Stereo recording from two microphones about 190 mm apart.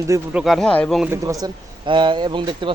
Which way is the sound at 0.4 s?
Centre (ahead or behind).